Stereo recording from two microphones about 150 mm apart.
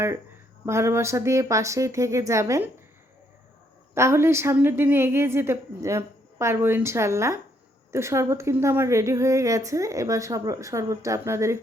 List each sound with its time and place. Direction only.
0.6 s a woman's voice: 15° right (ahead or behind)
3.9 s a woman's voice: 15° right (ahead or behind)